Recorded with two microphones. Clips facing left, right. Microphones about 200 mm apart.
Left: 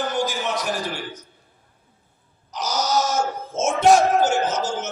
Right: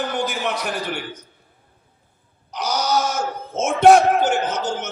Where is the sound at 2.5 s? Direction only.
60° right (ahead or behind).